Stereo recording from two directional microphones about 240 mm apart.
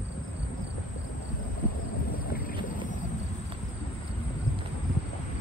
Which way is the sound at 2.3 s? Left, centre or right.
Left.